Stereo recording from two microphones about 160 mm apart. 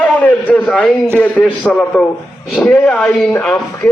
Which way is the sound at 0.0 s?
10° left (ahead or behind).